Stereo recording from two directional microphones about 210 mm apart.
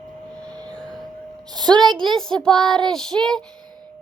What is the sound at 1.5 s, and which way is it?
Speech, 20° right (ahead or behind).